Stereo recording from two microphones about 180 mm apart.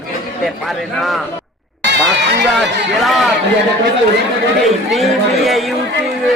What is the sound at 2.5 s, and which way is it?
Speech, centre (ahead or behind).